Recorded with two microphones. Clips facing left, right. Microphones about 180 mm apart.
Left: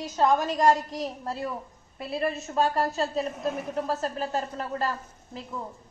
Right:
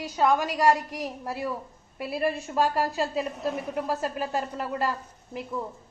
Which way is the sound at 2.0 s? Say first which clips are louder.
Right 1 dB; 10° right (ahead or behind).